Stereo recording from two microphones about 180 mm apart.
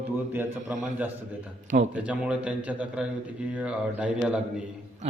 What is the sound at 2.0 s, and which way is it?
Speech, 5° right (ahead or behind).